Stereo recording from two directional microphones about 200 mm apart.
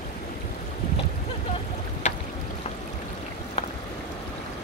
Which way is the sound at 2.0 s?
35° left (ahead or behind).